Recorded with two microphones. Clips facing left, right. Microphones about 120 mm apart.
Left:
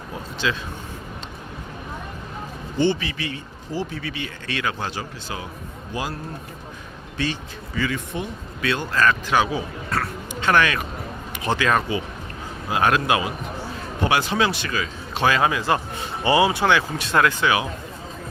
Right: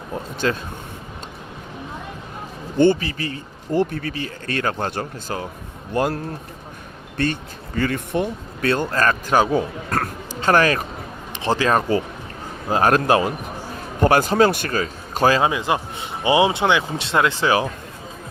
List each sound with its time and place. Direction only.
0.4 s speech: 45° right (ahead or behind)
2.7 s a man's voice: 45° right (ahead or behind)
3.7 s speech: 55° right (ahead or behind)
4.1 s speech: 40° right (ahead or behind); by 6.1 s 55° right (ahead or behind)
7.2 s a man's voice: 50° right (ahead or behind)
15.4 s speech: 20° right (ahead or behind)